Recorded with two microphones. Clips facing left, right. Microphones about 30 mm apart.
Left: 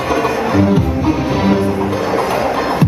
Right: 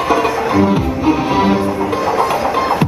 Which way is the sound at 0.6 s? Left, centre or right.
Right.